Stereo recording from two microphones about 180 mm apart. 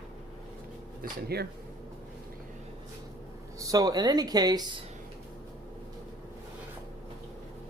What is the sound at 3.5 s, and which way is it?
Speech, 20° right (ahead or behind).